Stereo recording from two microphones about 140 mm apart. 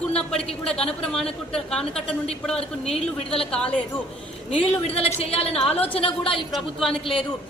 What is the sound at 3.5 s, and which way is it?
Speech, 5° left (ahead or behind).